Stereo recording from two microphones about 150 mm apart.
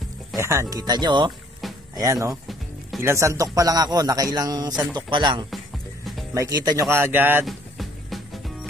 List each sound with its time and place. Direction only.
0.4 s a man's voice: 20° right (ahead or behind)
7.4 s music: centre (ahead or behind)